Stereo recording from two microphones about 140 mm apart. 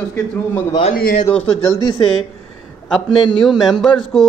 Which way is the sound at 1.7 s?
30° left (ahead or behind).